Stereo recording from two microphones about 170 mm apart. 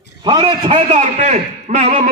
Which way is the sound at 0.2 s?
30° right (ahead or behind).